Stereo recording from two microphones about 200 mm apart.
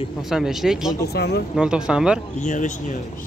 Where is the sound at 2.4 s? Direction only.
40° left (ahead or behind).